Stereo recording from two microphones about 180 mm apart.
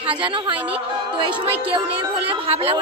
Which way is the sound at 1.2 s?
30° right (ahead or behind).